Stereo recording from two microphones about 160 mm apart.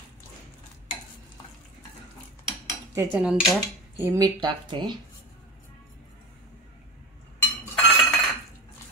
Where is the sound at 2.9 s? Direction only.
20° right (ahead or behind).